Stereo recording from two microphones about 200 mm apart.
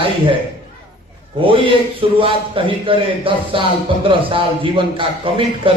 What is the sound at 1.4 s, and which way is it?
A man's voice, 25° right (ahead or behind).